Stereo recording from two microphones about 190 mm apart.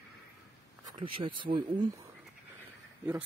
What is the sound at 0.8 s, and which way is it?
Speech, 25° right (ahead or behind).